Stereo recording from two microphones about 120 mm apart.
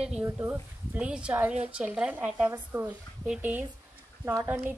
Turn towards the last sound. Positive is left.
turn(degrees=-20)  # may be behind; listen again after turning